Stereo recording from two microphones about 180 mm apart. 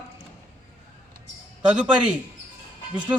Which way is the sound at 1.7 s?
5° right (ahead or behind).